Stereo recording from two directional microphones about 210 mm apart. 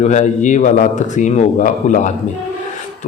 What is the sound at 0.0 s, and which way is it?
A man's voice, 35° left (ahead or behind).